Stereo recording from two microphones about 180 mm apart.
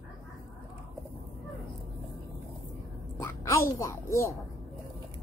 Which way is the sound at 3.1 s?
15° left (ahead or behind).